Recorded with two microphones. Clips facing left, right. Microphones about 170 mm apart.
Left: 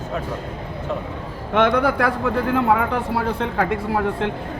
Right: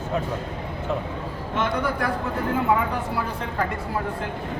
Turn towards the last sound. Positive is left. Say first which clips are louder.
# left 6 dB
turn(degrees=65)  # may be behind; listen again after turning